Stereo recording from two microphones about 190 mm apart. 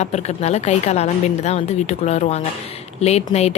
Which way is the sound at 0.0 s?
35° left (ahead or behind).